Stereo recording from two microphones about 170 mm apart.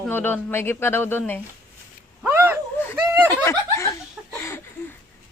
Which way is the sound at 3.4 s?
15° left (ahead or behind).